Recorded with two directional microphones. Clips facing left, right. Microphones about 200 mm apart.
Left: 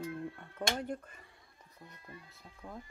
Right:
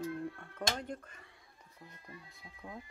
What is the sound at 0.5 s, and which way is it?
Speech, 10° left (ahead or behind).